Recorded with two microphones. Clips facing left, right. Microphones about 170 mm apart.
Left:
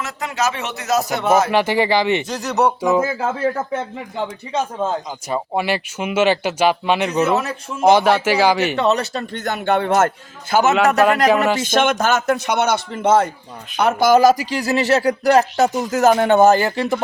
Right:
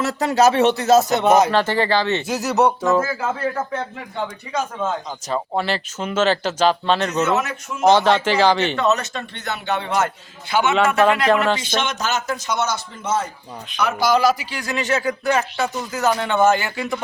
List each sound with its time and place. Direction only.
0.0 s speech: 35° right (ahead or behind); by 1.5 s 20° right (ahead or behind)
1.5 s speech: 10° left (ahead or behind)
2.2 s speech: 5° right (ahead or behind)
2.8 s speech: 15° left (ahead or behind)
4.5 s speech: 30° left (ahead or behind)
5.3 s speech: 10° left (ahead or behind)
8.8 s speech: 35° left (ahead or behind); by 10.1 s 50° left (ahead or behind)
10.5 s speech: 40° left (ahead or behind)
11.6 s speech: 50° left (ahead or behind); by 17.0 s 35° left (ahead or behind)